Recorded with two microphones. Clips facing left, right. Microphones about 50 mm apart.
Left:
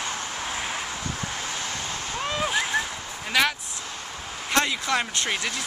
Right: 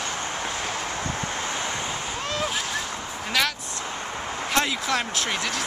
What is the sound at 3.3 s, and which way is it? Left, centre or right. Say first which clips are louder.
Speech: left 2 dB; centre.